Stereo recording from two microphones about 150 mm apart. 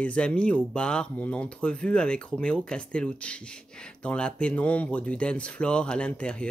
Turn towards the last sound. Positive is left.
turn(degrees=5)  # may be behind; listen again after turning